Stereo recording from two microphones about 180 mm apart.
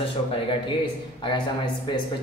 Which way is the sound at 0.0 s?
30° left (ahead or behind).